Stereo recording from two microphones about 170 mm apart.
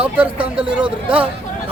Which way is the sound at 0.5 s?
5° right (ahead or behind).